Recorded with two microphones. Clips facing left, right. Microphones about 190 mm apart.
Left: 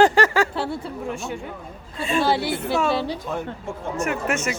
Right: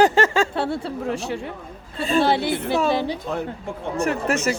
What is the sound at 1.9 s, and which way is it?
Speech, 35° right (ahead or behind).